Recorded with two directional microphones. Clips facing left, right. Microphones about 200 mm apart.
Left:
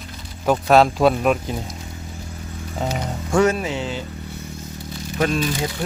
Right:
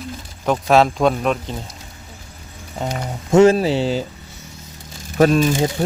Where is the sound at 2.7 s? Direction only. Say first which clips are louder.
Even; centre (ahead or behind).